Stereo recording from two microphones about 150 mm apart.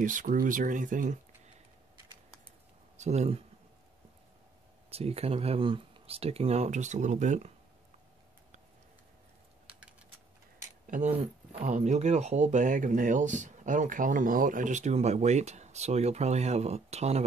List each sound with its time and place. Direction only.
0.0 s speech: 60° right (ahead or behind)
3.0 s speech: 50° right (ahead or behind)
4.9 s speech: 40° right (ahead or behind)
10.9 s speech: 55° right (ahead or behind)